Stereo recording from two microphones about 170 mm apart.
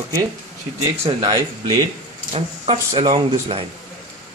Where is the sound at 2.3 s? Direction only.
40° right (ahead or behind).